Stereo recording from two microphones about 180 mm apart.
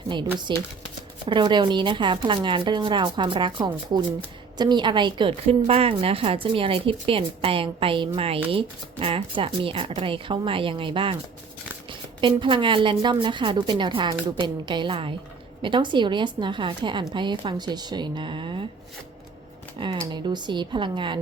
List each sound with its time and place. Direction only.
0.5 s a woman's voice: 25° right (ahead or behind)
19.8 s a woman's voice: 25° right (ahead or behind)